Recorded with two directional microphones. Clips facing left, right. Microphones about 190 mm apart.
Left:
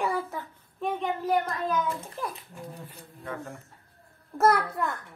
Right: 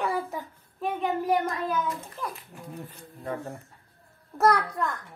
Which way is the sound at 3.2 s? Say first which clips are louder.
Right 3 dB; 35° right (ahead or behind).